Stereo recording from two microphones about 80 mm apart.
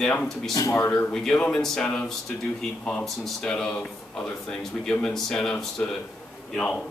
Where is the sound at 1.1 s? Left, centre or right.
Centre.